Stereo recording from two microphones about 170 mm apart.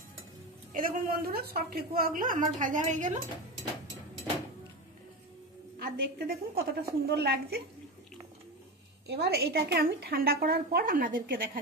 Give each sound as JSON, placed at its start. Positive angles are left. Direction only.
{"t": 0.7, "sound": "a woman's voice", "side_deg": -60}
{"t": 5.8, "sound": "a woman's voice", "side_deg": -65}
{"t": 9.0, "sound": "a woman's voice", "side_deg": -75}